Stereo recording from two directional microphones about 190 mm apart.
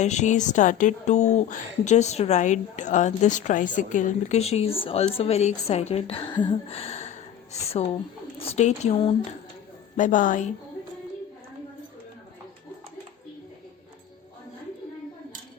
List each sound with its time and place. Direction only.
0.0 s speech: 35° left (ahead or behind)
10.0 s a woman's voice: 45° left (ahead or behind)